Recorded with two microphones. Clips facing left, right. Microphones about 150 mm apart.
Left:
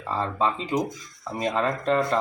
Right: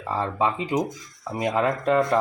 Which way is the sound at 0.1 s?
15° right (ahead or behind).